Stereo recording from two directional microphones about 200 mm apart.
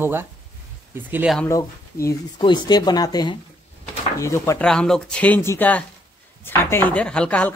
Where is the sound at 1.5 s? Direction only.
15° left (ahead or behind).